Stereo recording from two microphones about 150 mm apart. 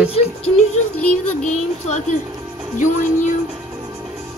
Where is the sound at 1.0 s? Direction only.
10° left (ahead or behind).